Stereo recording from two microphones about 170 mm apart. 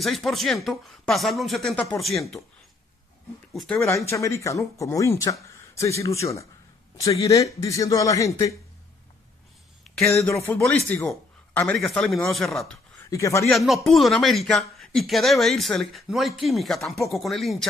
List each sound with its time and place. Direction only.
0.0 s speech: centre (ahead or behind)
3.5 s speech: 5° left (ahead or behind)
3.8 s speech: 15° left (ahead or behind)
10.0 s speech: 15° left (ahead or behind)
13.1 s speech: 20° left (ahead or behind)
13.5 s speech: centre (ahead or behind)